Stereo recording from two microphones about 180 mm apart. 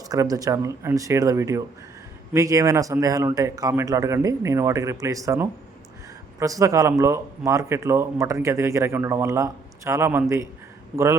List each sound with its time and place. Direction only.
0.0 s speech: 20° right (ahead or behind)